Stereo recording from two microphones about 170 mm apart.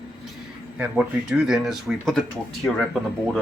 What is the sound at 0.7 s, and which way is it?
Speech, 10° right (ahead or behind).